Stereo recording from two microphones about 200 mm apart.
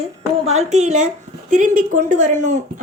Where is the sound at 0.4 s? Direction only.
35° right (ahead or behind).